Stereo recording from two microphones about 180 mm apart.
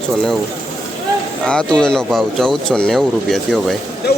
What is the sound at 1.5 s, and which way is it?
Speech, 5° left (ahead or behind).